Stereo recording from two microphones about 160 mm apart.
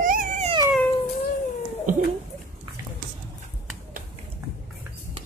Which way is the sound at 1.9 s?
50° right (ahead or behind).